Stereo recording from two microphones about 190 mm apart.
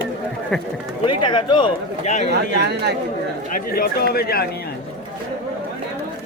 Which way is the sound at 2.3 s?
60° right (ahead or behind).